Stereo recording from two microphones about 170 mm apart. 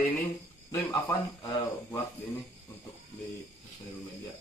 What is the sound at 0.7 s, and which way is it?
Speech, 20° left (ahead or behind).